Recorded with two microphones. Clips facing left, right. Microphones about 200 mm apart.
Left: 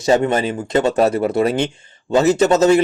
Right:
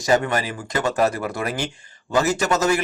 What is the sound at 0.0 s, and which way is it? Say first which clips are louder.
Speech: left 5 dB; 25° left (ahead or behind).